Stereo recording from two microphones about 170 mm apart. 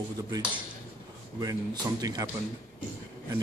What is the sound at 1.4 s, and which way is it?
Speech, 20° right (ahead or behind).